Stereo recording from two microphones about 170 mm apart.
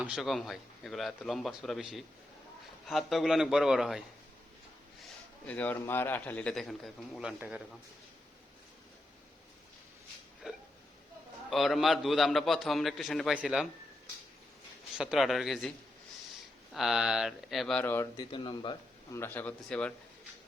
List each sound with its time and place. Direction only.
0.0 s a man's voice: 5° right (ahead or behind)
5.5 s a man's voice: 10° left (ahead or behind); by 7.6 s 5° right (ahead or behind)
10.4 s hiccup: 5° right (ahead or behind)
11.5 s a man's voice: centre (ahead or behind)
14.9 s a man's voice: 5° right (ahead or behind)
16.7 s a man's voice: centre (ahead or behind)
18.2 s speech: 30° left (ahead or behind)
19.1 s a man's voice: 15° left (ahead or behind)